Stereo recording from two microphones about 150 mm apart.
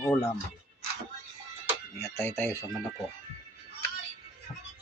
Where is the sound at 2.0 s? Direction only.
15° left (ahead or behind).